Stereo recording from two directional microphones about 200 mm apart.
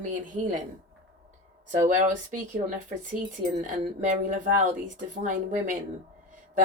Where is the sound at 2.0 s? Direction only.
40° right (ahead or behind).